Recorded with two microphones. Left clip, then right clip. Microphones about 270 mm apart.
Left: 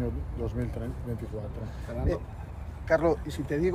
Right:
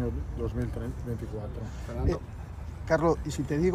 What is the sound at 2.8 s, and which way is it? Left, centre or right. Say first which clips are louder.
Speech: left 1 dB; right.